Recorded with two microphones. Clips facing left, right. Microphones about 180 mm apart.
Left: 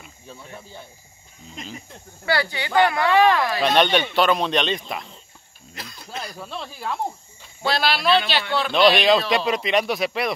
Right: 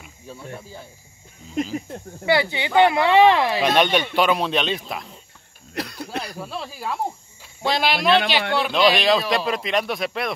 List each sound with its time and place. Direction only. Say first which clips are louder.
0.0 s speech: right 4 dB; 5° right (ahead or behind)
2.2 s speech: right 3 dB; 20° right (ahead or behind)
3.6 s a man's voice: left 3 dB; 5° right (ahead or behind)
5.8 s a sound: right 11 dB; 65° right (ahead or behind)
6.3 s speech: right 2 dB; 5° right (ahead or behind)
7.6 s a man's voice: right 1 dB; 15° right (ahead or behind)
8.7 s speech: left 2 dB; centre (ahead or behind)